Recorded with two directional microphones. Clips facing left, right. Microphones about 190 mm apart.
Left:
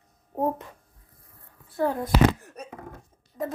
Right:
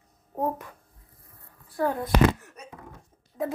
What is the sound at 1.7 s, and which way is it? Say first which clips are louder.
Speech: left 1 dB; 25° left (ahead or behind).